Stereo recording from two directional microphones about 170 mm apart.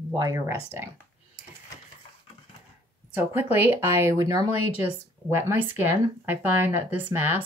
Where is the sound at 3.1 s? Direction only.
10° right (ahead or behind).